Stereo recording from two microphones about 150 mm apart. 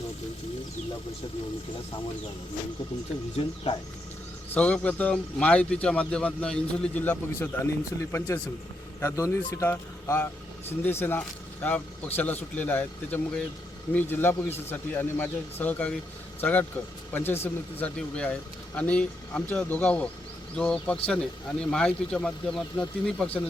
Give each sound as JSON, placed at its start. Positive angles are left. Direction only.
{"t": 3.3, "sound": "speech", "side_deg": 40}
{"t": 4.5, "sound": "a man's voice", "side_deg": 10}